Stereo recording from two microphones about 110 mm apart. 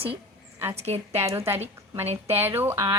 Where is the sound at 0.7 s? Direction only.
70° right (ahead or behind).